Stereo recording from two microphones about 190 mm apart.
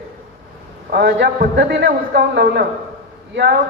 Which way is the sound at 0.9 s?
55° right (ahead or behind).